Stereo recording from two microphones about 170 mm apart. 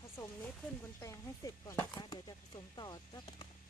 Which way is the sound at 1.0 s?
20° left (ahead or behind).